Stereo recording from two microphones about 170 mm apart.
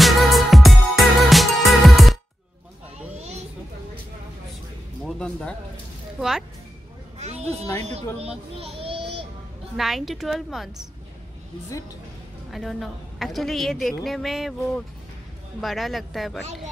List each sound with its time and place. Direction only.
0.0 s music: centre (ahead or behind)
5.0 s a woman's voice: 5° left (ahead or behind)
7.2 s a sound: 40° right (ahead or behind)
7.8 s a child's voice: 40° right (ahead or behind)
9.8 s a woman's voice: centre (ahead or behind)
12.4 s a woman's voice: centre (ahead or behind)
15.6 s a woman's voice: centre (ahead or behind)